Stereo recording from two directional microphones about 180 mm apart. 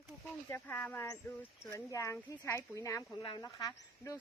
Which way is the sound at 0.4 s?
15° left (ahead or behind).